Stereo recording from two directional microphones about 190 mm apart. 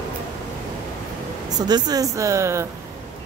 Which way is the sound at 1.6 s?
20° right (ahead or behind).